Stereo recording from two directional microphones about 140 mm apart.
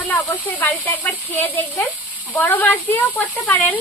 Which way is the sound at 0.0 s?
10° left (ahead or behind).